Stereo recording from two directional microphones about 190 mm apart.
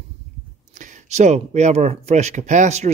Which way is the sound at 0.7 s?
40° right (ahead or behind).